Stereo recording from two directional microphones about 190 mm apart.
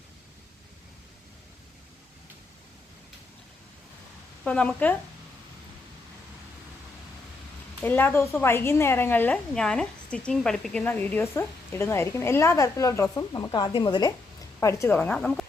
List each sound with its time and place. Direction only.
4.4 s a woman's voice: 5° left (ahead or behind)
7.8 s a woman's voice: 10° left (ahead or behind)